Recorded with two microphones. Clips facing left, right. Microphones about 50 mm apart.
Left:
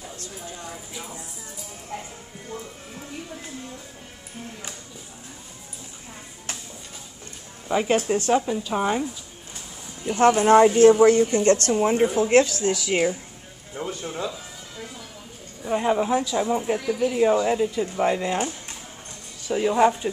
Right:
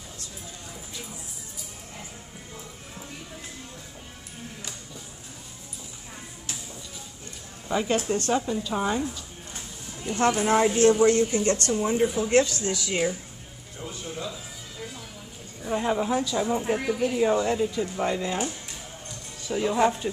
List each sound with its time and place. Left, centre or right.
7.6 s a woman's voice: centre
10.0 s speech: left
10.6 s speech: centre
11.4 s speech: left
11.7 s speech: left
12.6 s speech: left
13.7 s speech: left
15.6 s speech: centre
19.5 s speech: centre